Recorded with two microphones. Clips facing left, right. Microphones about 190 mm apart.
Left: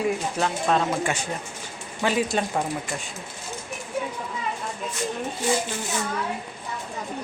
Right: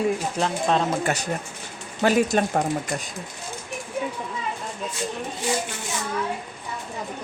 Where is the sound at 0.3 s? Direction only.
35° right (ahead or behind).